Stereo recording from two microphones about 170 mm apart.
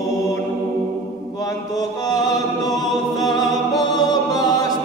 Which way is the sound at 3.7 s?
20° left (ahead or behind).